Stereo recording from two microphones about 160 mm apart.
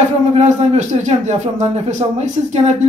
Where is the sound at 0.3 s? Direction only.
45° right (ahead or behind).